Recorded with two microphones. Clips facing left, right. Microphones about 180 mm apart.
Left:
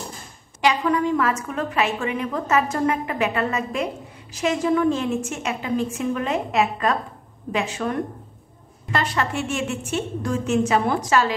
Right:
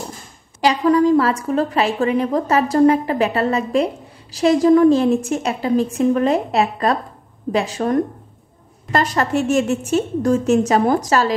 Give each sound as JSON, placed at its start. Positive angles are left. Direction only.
{"t": 0.6, "sound": "a woman's voice", "side_deg": -35}